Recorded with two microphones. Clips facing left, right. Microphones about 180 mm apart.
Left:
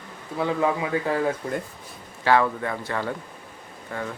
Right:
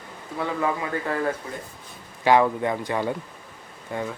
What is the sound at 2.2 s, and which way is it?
Speech, 15° right (ahead or behind).